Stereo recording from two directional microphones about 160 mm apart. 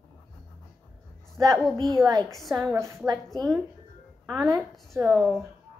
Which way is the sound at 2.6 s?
20° right (ahead or behind).